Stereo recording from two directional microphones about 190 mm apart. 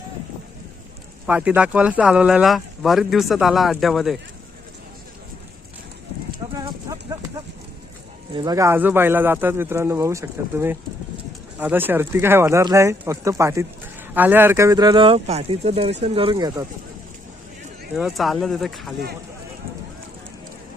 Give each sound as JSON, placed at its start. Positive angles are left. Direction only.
{"t": 1.3, "sound": "speech", "side_deg": -5}
{"t": 6.9, "sound": "vehicle", "side_deg": -20}
{"t": 8.3, "sound": "speech", "side_deg": -20}
{"t": 17.9, "sound": "speech", "side_deg": 0}